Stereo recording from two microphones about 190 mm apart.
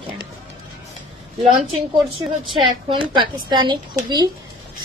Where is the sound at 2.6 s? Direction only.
25° right (ahead or behind).